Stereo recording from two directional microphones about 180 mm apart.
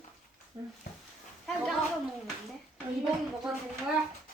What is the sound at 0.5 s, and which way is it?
Speech, 30° right (ahead or behind).